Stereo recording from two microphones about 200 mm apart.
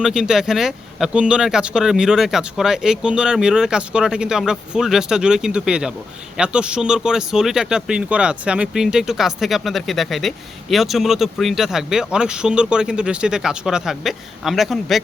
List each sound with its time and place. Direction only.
0.0 s speech: 5° right (ahead or behind)